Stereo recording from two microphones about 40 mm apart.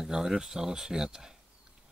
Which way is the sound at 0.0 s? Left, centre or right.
Centre.